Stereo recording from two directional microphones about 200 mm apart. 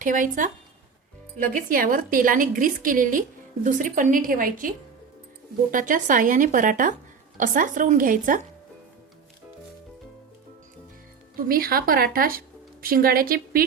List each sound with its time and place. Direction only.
0.0 s a woman's voice: 40° right (ahead or behind)
5.7 s speech: 40° right (ahead or behind)
11.3 s a woman's voice: 45° right (ahead or behind)